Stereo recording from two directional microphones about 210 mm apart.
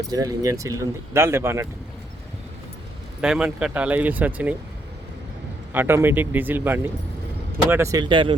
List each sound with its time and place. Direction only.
0.1 s speech: 15° right (ahead or behind)
3.2 s speech: 5° right (ahead or behind)
5.7 s speech: 10° right (ahead or behind)